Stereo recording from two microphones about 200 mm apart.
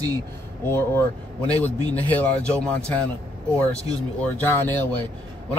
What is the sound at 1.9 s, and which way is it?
Speech, 10° left (ahead or behind).